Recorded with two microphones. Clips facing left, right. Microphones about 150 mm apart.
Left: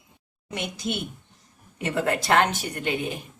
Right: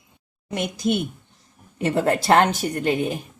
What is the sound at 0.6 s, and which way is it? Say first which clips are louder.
A woman's voice: right 7 dB; 40° right (ahead or behind).